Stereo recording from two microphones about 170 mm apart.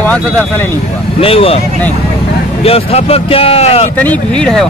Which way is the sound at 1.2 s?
35° left (ahead or behind).